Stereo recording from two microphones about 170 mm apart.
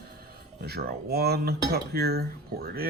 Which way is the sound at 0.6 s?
70° right (ahead or behind).